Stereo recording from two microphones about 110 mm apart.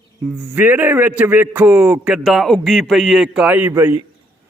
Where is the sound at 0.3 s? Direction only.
15° right (ahead or behind); by 3.4 s centre (ahead or behind).